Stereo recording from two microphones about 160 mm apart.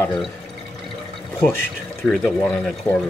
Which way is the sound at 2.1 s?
5° left (ahead or behind).